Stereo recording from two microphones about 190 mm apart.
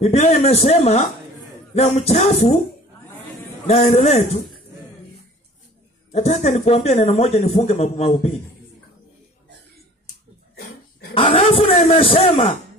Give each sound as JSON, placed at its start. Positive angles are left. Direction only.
{"t": 0.0, "sound": "speech", "side_deg": 35}
{"t": 3.6, "sound": "speech", "side_deg": 35}
{"t": 6.1, "sound": "speech", "side_deg": 35}
{"t": 10.5, "sound": "dog", "side_deg": 55}
{"t": 11.1, "sound": "a sound", "side_deg": 30}
{"t": 11.7, "sound": "speech", "side_deg": 30}